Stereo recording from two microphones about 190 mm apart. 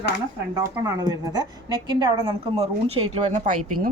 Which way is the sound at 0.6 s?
20° right (ahead or behind).